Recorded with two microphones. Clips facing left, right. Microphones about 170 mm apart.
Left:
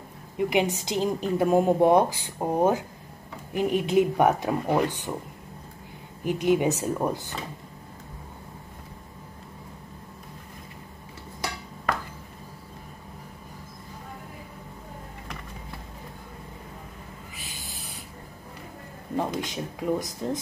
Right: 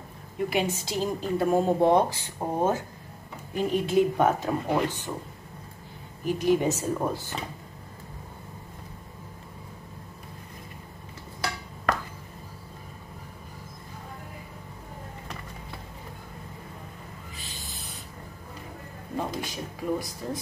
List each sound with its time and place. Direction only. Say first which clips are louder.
0.5 s a woman's voice: left 3 dB; 15° left (ahead or behind)
6.2 s a woman's voice: left 1 dB; 20° left (ahead or behind)
19.1 s a sound: left 3 dB; 20° left (ahead or behind)